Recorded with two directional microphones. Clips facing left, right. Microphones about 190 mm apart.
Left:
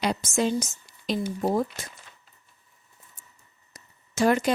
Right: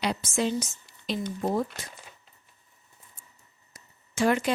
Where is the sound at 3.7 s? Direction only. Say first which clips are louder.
Left 2 dB; 40° left (ahead or behind).